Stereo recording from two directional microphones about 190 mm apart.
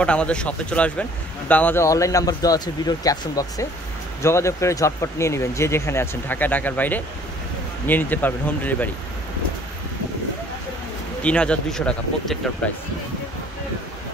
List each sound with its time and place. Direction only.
0.0 s speech: 5° left (ahead or behind)
11.2 s speech: 5° left (ahead or behind)